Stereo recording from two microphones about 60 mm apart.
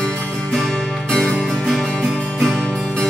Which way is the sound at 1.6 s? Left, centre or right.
Centre.